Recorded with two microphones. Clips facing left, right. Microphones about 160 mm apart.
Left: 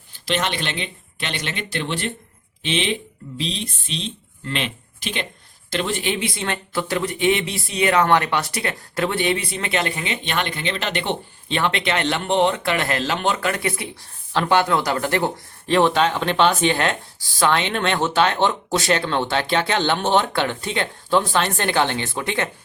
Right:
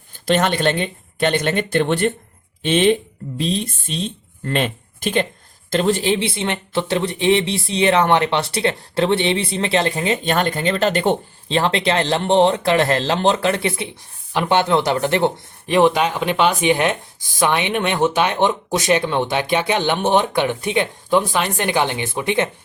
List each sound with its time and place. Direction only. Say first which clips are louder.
0.1 s speech: right 6 dB; 50° right (ahead or behind); by 22.4 s 20° right (ahead or behind)